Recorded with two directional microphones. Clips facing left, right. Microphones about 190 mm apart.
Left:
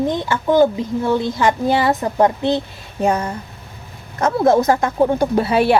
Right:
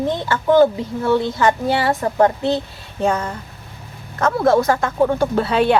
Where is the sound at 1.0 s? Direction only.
15° left (ahead or behind).